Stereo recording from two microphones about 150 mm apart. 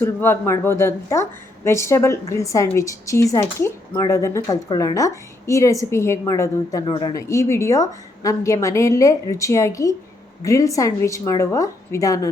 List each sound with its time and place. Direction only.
0.0 s a woman's voice: 15° left (ahead or behind)